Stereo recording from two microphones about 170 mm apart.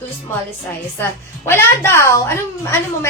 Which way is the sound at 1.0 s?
15° left (ahead or behind).